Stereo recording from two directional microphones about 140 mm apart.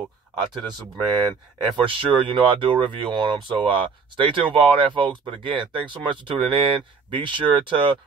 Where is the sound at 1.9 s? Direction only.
40° right (ahead or behind).